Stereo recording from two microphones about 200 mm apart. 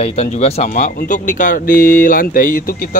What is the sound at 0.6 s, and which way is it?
Speech, 40° left (ahead or behind).